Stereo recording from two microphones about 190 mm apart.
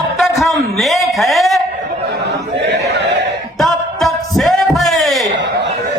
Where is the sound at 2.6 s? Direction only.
65° right (ahead or behind).